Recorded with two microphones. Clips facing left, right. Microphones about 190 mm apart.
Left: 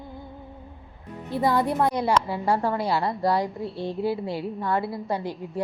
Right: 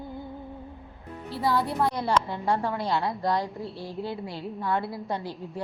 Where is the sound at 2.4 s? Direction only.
Centre (ahead or behind).